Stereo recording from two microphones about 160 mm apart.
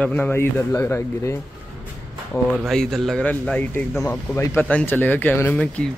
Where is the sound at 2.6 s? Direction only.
Centre (ahead or behind).